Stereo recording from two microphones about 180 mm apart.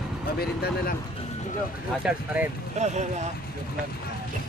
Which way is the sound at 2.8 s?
40° right (ahead or behind).